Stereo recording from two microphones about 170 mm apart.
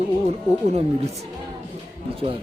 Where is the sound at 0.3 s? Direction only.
40° right (ahead or behind).